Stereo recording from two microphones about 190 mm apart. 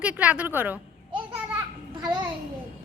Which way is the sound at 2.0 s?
20° right (ahead or behind).